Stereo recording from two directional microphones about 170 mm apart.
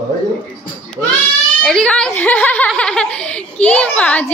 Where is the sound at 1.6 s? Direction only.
5° left (ahead or behind).